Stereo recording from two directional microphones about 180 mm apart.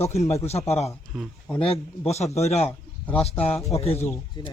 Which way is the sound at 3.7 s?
35° left (ahead or behind).